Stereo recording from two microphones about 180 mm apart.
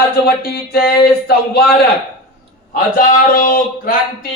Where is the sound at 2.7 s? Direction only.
55° left (ahead or behind).